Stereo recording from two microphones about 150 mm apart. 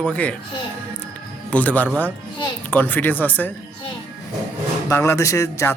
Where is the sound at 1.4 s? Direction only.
10° left (ahead or behind).